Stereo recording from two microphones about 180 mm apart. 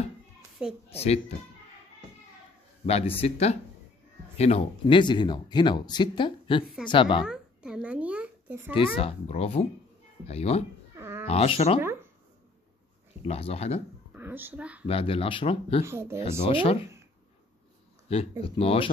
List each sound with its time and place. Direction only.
0.8 s speech: 35° left (ahead or behind)
2.9 s speech: 35° left (ahead or behind)
7.2 s babbling: 5° right (ahead or behind)
8.7 s speech: 30° left (ahead or behind)
11.0 s cat: 15° right (ahead or behind)
11.2 s speech: 35° left (ahead or behind)
13.2 s speech: 35° left (ahead or behind)
14.1 s speech: 10° right (ahead or behind)
14.9 s speech: 30° left (ahead or behind)
15.8 s speech: 15° right (ahead or behind)
16.2 s speech: 30° left (ahead or behind)
18.4 s speech: 30° left (ahead or behind)